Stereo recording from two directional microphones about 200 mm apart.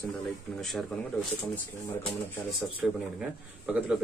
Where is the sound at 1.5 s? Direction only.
10° left (ahead or behind).